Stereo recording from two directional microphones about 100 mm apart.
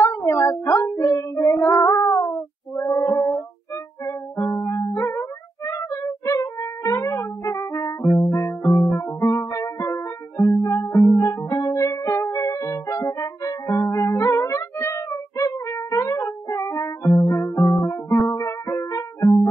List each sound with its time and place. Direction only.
0.0 s child singing: 30° left (ahead or behind)
4.0 s music: 30° left (ahead or behind)
5.7 s a sound: 30° left (ahead or behind)
9.2 s music: 30° left (ahead or behind)